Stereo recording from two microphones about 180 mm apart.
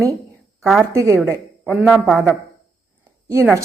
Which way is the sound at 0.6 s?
Centre (ahead or behind).